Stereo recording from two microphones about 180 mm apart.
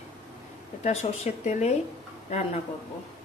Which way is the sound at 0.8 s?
40° left (ahead or behind).